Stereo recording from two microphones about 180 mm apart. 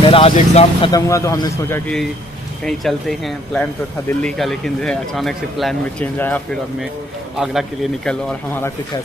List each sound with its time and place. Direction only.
0.0 s speech: 30° left (ahead or behind)
1.0 s a man's voice: 15° left (ahead or behind)
2.6 s speech: centre (ahead or behind)
7.3 s speech: centre (ahead or behind)